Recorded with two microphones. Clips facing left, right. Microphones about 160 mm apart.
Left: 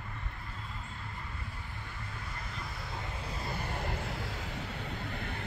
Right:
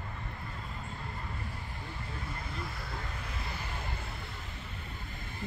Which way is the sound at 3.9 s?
90° left.